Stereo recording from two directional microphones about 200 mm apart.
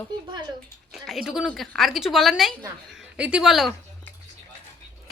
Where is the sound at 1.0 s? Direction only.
Centre (ahead or behind).